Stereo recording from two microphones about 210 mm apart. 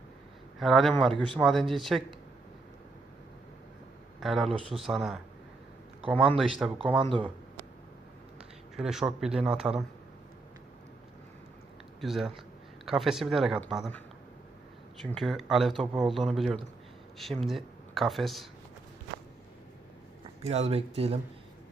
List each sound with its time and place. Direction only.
0.6 s speech: centre (ahead or behind)
4.2 s speech: centre (ahead or behind)
7.0 s speech: 25° right (ahead or behind)
8.4 s speech: centre (ahead or behind)
11.9 s speech: centre (ahead or behind)
15.2 s speech: centre (ahead or behind)
20.4 s speech: 30° right (ahead or behind)